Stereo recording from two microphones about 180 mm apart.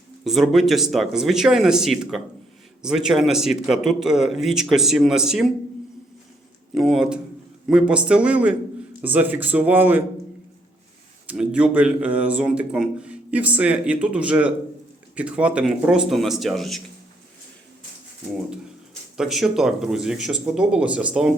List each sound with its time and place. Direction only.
0.3 s a man's voice: centre (ahead or behind)
6.7 s a man's voice: centre (ahead or behind)
11.3 s a man's voice: 5° right (ahead or behind)
19.1 s a man's voice: centre (ahead or behind)